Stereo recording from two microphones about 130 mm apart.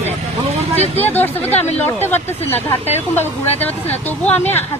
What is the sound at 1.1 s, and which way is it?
Speech, 15° left (ahead or behind).